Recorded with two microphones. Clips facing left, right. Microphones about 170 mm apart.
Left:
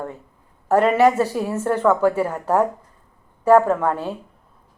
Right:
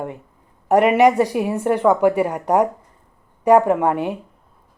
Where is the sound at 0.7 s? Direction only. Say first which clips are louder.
Right 2 dB; 15° right (ahead or behind).